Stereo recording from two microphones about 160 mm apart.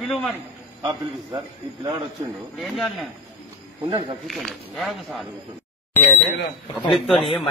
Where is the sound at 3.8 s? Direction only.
30° right (ahead or behind).